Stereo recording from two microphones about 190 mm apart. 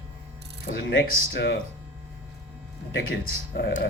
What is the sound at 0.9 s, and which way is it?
Speech, 60° left (ahead or behind).